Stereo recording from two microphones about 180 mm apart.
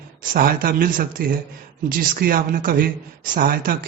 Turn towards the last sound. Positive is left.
turn(degrees=-55)  # may be behind; listen again after turning